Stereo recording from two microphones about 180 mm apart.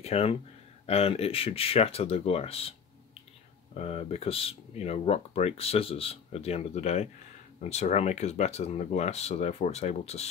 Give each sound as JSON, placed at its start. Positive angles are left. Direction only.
{"t": 0.0, "sound": "speech", "side_deg": 35}
{"t": 3.7, "sound": "speech", "side_deg": 35}